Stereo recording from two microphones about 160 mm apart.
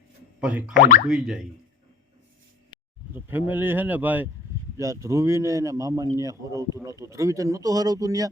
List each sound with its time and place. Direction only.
0.3 s boing: 5° right (ahead or behind)
1.0 s speech: 5° right (ahead or behind)
3.2 s a man's voice: 10° right (ahead or behind)